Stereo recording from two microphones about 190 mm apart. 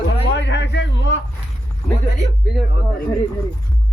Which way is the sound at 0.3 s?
65° left (ahead or behind).